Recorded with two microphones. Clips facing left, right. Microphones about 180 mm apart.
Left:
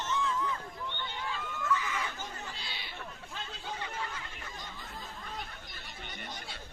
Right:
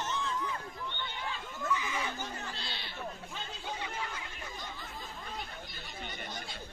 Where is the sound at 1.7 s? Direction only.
15° right (ahead or behind).